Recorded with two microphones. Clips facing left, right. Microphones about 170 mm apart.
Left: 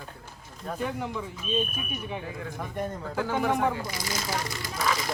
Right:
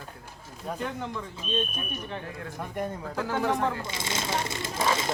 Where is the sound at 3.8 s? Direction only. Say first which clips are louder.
Even; 25° right (ahead or behind).